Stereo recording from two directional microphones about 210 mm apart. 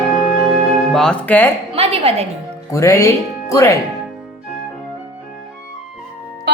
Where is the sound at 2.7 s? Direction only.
15° left (ahead or behind).